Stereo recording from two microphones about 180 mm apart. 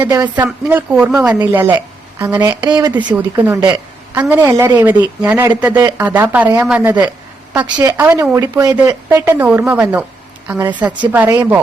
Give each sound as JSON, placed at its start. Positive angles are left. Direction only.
{"t": 0.1, "sound": "a woman's voice", "side_deg": -15}
{"t": 3.2, "sound": "a woman's voice", "side_deg": -10}
{"t": 3.7, "sound": "a sound", "side_deg": -10}
{"t": 4.4, "sound": "a woman's voice", "side_deg": -15}